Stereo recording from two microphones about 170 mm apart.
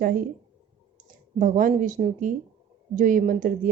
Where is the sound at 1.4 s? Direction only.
50° right (ahead or behind).